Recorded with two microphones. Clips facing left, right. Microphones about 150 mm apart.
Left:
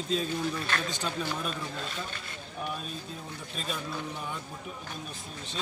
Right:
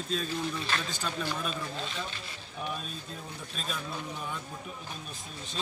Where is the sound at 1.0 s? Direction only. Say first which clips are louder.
Left 1 dB; 15° left (ahead or behind).